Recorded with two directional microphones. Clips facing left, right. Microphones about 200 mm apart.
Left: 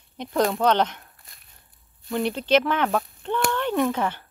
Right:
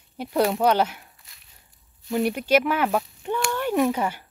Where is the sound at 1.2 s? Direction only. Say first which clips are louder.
Left 3 dB; 50° left (ahead or behind).